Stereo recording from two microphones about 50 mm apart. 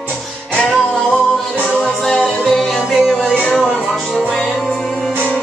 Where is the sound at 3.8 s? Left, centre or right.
Centre.